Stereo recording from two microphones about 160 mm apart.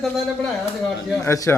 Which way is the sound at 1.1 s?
20° left (ahead or behind).